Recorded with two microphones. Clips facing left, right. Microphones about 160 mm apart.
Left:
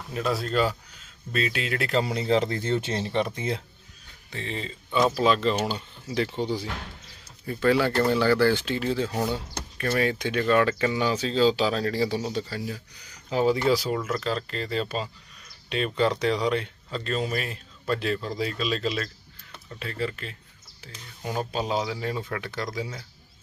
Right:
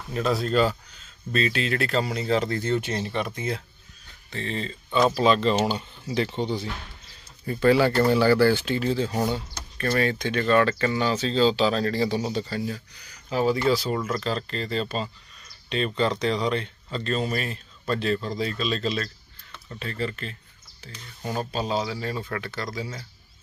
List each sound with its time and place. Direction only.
0.1 s speech: 5° left (ahead or behind); by 3.6 s 25° left (ahead or behind)
4.3 s speech: 10° left (ahead or behind)
7.4 s speech: centre (ahead or behind)
13.3 s speech: 15° left (ahead or behind)
13.9 s speech: 5° left (ahead or behind)